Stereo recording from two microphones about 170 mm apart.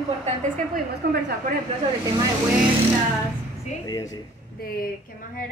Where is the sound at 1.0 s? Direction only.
65° right (ahead or behind).